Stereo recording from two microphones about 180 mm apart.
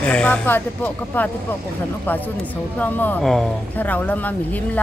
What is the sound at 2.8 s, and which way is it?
Speech, 10° left (ahead or behind).